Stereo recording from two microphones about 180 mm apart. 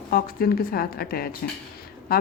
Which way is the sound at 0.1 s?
55° left (ahead or behind).